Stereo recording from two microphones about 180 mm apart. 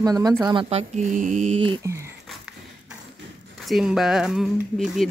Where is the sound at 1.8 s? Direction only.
15° right (ahead or behind).